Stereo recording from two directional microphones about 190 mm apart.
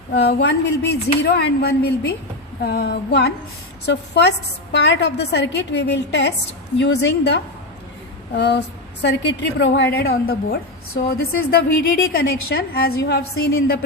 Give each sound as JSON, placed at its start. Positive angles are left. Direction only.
{"t": 0.1, "sound": "speech", "side_deg": 60}